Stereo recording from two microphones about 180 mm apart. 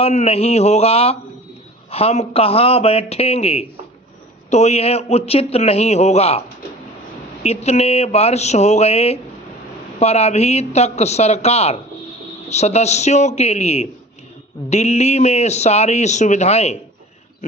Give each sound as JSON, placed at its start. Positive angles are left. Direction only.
{"t": 0.0, "sound": "speech", "side_deg": 35}
{"t": 7.4, "sound": "speech", "side_deg": 35}